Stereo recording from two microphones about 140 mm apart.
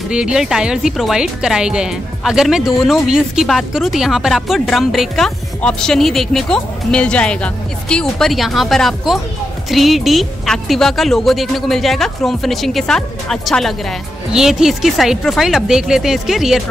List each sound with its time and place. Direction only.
0.1 s speech: 5° right (ahead or behind)